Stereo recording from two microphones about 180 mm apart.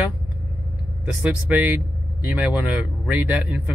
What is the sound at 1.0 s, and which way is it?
Speech, 10° right (ahead or behind).